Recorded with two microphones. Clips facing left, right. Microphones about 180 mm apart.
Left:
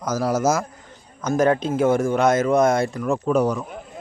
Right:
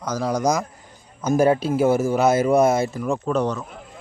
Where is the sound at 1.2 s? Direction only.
10° right (ahead or behind); by 3.7 s 10° left (ahead or behind).